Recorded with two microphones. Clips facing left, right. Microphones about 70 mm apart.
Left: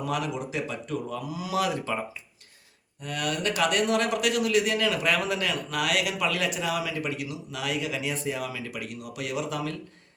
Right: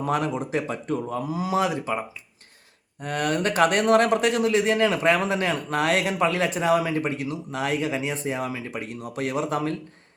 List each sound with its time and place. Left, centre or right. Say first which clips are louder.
0.0 s speech: right 5 dB; right; by 2.0 s centre
3.0 s speech: right 5 dB; right